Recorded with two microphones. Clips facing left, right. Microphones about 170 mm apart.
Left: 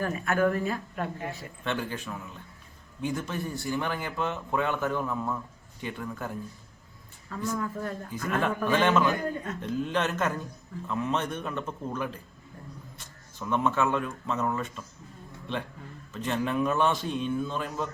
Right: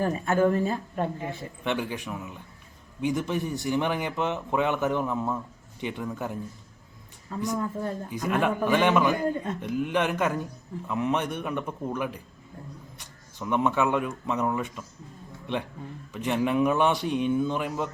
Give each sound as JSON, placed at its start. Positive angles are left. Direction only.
{"t": 0.0, "sound": "speech", "side_deg": -25}
{"t": 1.6, "sound": "a man's voice", "side_deg": -15}
{"t": 16.1, "sound": "a man's voice", "side_deg": -15}